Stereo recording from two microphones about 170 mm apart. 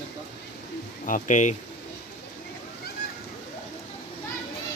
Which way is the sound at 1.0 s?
50° left (ahead or behind).